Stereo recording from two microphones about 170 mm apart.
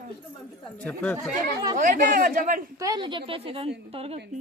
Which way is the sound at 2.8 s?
25° right (ahead or behind).